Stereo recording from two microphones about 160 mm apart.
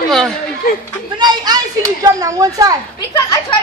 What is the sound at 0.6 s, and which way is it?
Speech, 65° left (ahead or behind).